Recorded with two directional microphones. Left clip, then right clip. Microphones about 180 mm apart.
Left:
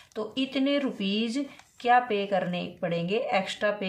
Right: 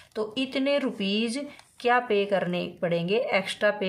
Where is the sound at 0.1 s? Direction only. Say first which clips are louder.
Right 2 dB; 30° right (ahead or behind).